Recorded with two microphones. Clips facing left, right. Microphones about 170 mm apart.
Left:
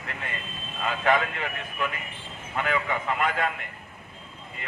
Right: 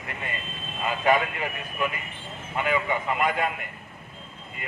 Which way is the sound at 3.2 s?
15° right (ahead or behind).